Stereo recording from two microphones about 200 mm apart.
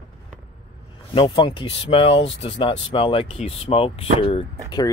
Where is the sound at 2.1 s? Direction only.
65° left (ahead or behind).